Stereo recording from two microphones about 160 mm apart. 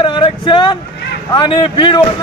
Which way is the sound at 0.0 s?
30° left (ahead or behind).